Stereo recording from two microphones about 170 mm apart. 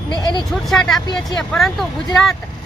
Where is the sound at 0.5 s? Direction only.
Centre (ahead or behind).